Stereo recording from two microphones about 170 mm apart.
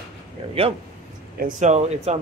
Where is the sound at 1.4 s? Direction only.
45° right (ahead or behind).